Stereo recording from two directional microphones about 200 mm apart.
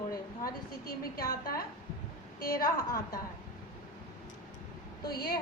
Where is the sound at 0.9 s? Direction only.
45° left (ahead or behind).